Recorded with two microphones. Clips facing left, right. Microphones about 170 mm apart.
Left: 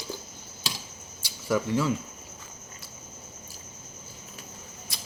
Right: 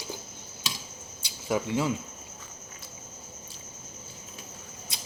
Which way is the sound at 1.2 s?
20° right (ahead or behind).